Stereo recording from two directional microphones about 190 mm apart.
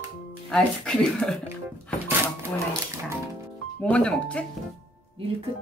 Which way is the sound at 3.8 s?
5° left (ahead or behind).